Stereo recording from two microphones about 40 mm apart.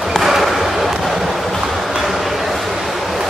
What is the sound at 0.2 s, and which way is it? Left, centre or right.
Basketball bounce, centre.